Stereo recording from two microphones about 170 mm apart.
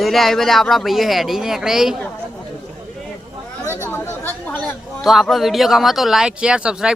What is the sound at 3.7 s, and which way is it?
Speech, 15° left (ahead or behind).